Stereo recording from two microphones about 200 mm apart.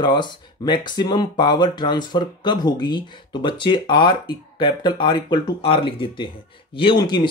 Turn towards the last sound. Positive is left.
turn(degrees=20)  # may be behind; listen again after turning